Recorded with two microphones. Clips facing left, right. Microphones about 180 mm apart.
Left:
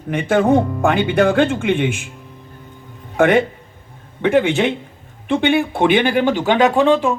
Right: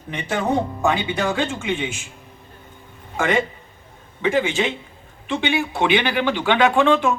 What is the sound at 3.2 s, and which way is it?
A man's voice, 60° left (ahead or behind).